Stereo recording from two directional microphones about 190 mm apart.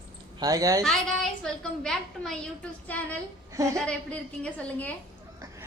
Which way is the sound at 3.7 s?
5° left (ahead or behind).